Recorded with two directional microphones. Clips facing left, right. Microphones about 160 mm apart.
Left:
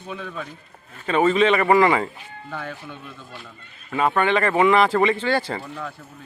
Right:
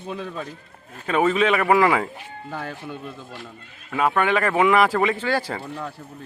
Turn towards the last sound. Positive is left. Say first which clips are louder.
# left 1 dB
turn(degrees=-10)  # may be behind; listen again after turning